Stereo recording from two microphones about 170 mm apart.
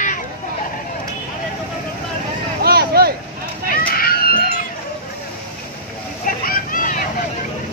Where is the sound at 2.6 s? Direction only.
65° right (ahead or behind).